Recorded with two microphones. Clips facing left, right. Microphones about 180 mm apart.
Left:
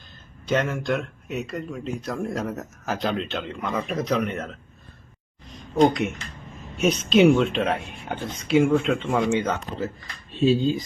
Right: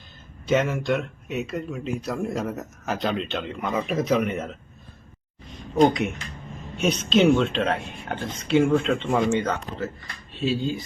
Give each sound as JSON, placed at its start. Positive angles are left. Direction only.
{"t": 0.4, "sound": "speech", "side_deg": -5}
{"t": 10.4, "sound": "speech", "side_deg": 25}